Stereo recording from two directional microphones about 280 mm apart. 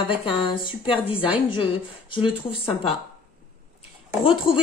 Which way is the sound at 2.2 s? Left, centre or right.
Centre.